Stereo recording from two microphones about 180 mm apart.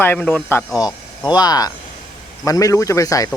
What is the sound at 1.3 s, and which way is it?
A man's voice, 20° left (ahead or behind).